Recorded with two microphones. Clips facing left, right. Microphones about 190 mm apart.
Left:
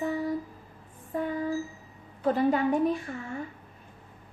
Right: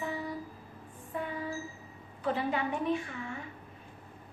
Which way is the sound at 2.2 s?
40° left (ahead or behind).